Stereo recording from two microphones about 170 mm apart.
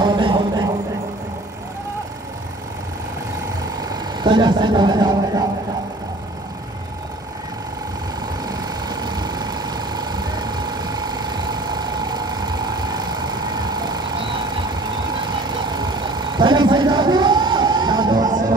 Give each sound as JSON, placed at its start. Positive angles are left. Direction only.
{"t": 0.0, "sound": "a sound", "side_deg": -25}
{"t": 3.8, "sound": "speech", "side_deg": -25}
{"t": 8.5, "sound": "vehicle", "side_deg": -25}